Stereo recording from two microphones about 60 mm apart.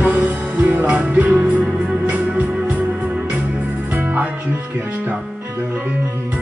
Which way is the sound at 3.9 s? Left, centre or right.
Right.